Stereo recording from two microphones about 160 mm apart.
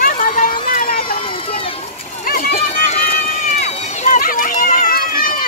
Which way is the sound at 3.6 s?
45° left (ahead or behind).